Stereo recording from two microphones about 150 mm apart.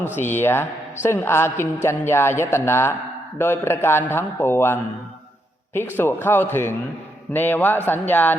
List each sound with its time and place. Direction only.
0.2 s a man's voice: 15° left (ahead or behind)